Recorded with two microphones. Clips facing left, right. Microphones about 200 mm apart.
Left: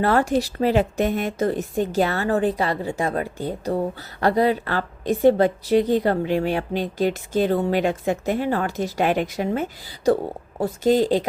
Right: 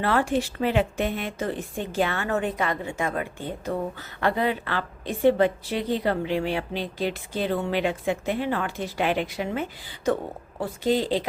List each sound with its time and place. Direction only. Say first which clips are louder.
0.0 s a woman's voice: left 4 dB; 40° left (ahead or behind)